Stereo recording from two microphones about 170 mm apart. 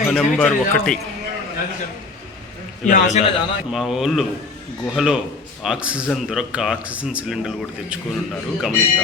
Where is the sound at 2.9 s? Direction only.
50° left (ahead or behind).